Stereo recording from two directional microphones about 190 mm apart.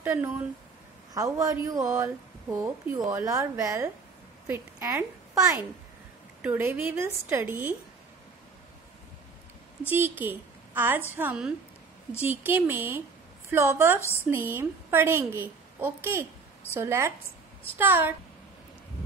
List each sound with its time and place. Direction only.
0.0 s a woman's voice: 10° right (ahead or behind)
9.8 s a woman's voice: 10° right (ahead or behind)